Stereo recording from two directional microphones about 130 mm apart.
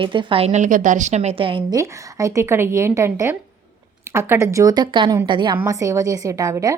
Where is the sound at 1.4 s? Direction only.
40° right (ahead or behind).